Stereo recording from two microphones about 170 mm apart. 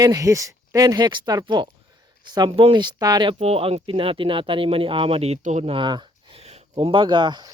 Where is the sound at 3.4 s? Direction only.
35° right (ahead or behind).